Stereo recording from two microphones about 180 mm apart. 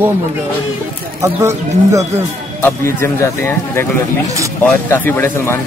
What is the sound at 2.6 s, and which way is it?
Speech, 15° left (ahead or behind).